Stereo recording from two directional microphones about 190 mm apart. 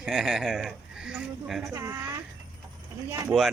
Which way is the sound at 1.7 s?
15° right (ahead or behind).